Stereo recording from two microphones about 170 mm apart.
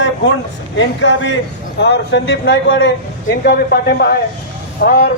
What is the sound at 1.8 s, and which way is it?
Speech, 75° left (ahead or behind).